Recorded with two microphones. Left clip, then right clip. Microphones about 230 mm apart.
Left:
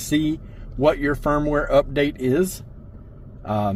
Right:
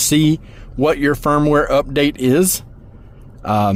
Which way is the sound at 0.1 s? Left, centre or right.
Right.